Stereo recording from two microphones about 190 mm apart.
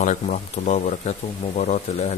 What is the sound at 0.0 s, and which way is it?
Speech, 40° left (ahead or behind).